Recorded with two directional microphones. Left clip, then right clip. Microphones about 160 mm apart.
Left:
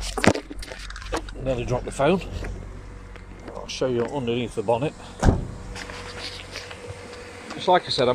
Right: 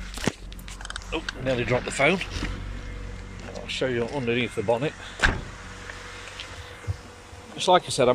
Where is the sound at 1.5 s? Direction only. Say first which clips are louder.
Right 1 dB; 15° left (ahead or behind).